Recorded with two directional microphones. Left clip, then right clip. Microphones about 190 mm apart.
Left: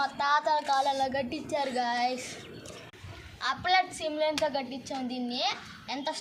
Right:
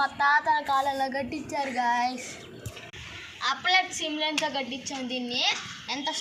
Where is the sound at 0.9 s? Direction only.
15° left (ahead or behind).